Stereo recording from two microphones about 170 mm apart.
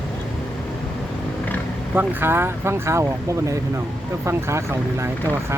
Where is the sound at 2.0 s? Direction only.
10° right (ahead or behind).